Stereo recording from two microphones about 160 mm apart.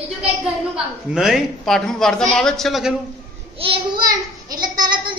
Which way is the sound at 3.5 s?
35° right (ahead or behind).